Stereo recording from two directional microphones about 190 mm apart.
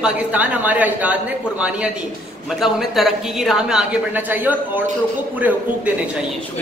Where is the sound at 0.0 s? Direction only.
10° right (ahead or behind).